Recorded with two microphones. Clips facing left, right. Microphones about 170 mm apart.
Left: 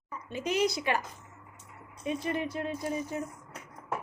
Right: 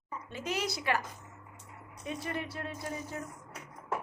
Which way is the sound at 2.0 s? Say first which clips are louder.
Left 6 dB; 20° left (ahead or behind).